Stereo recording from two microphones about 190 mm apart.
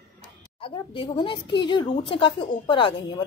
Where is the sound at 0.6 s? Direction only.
25° left (ahead or behind).